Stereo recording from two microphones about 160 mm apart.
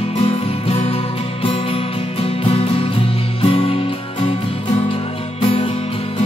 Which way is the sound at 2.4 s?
35° left (ahead or behind).